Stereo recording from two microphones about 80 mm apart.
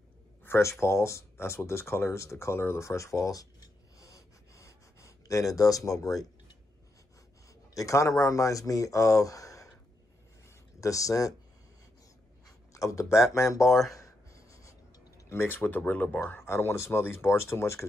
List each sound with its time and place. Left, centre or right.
0.4 s speech: left
7.7 s speech: left
10.8 s speech: left
12.7 s speech: left